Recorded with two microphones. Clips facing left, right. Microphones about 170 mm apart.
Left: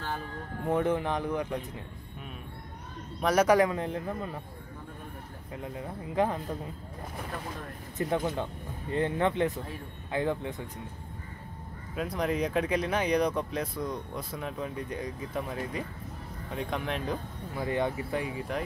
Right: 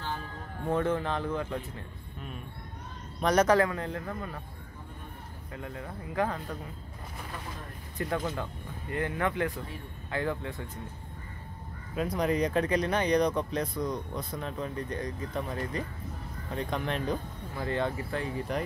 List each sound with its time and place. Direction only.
0.7 s speech: 15° left (ahead or behind)
3.2 s speech: 5° left (ahead or behind)
5.6 s speech: 20° left (ahead or behind)
8.0 s speech: 20° left (ahead or behind)
11.9 s speech: centre (ahead or behind)
17.6 s speech: 15° left (ahead or behind)
18.5 s speech: centre (ahead or behind)